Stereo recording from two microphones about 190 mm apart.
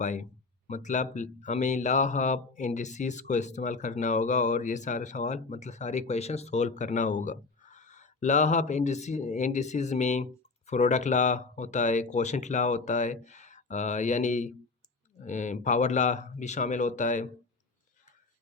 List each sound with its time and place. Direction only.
0.0 s speech: 40° left (ahead or behind)